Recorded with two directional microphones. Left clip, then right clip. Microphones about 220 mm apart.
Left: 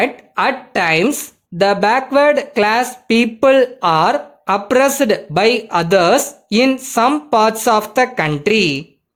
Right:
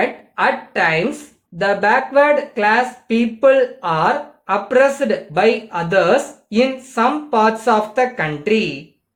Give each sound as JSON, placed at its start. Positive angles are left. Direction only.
{"t": 0.0, "sound": "speech", "side_deg": 50}